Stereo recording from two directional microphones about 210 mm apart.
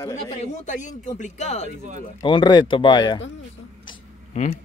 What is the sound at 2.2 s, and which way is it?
Speech, 20° left (ahead or behind).